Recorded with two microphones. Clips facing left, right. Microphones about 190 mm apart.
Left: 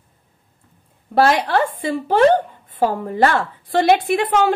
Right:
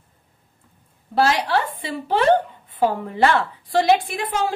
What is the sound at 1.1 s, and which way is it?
A woman's voice, 55° left (ahead or behind).